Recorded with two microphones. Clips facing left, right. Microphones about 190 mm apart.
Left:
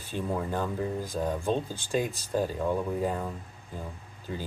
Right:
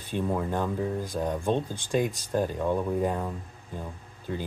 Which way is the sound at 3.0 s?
Centre (ahead or behind).